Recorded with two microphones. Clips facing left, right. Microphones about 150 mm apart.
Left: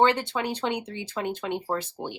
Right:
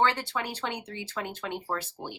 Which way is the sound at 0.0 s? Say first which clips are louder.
Left 5 dB; 20° left (ahead or behind).